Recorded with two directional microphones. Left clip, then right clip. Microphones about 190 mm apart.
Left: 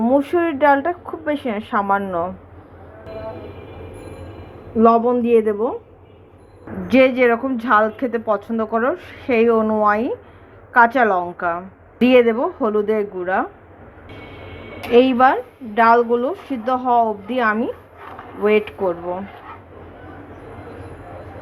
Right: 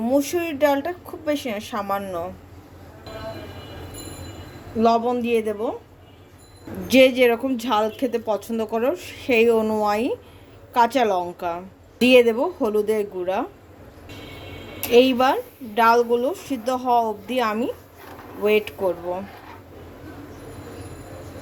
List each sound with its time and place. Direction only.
0.0 s a woman's voice: 5° right (ahead or behind)
4.8 s a woman's voice: centre (ahead or behind)
6.8 s a woman's voice: 15° right (ahead or behind)
15.0 s a woman's voice: 5° right (ahead or behind)